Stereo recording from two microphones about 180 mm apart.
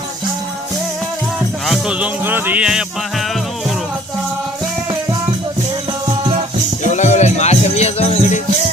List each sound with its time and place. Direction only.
1.6 s speech: 5° right (ahead or behind)
6.8 s music: 40° left (ahead or behind)